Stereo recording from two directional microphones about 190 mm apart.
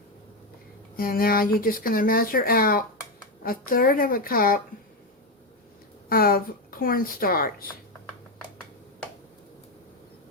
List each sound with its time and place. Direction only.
0.9 s speech: 50° left (ahead or behind)
6.1 s speech: 50° left (ahead or behind)